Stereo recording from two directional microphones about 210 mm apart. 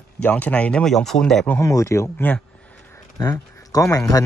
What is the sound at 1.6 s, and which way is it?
Speech, 15° left (ahead or behind).